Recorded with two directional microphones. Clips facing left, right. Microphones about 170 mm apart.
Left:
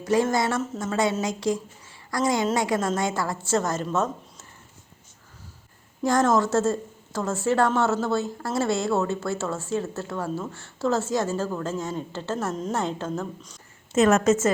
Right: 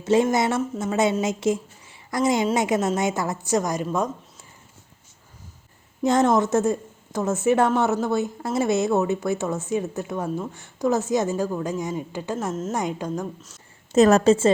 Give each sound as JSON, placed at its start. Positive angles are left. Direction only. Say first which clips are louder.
{"t": 0.0, "sound": "a woman's voice", "louder": "right 3 dB", "side_deg": -25}
{"t": 6.0, "sound": "speech", "louder": "right 2 dB", "side_deg": -20}
{"t": 12.5, "sound": "a woman's voice", "louder": "right 1 dB", "side_deg": -5}
{"t": 13.9, "sound": "a woman's voice", "louder": "right 3 dB", "side_deg": -35}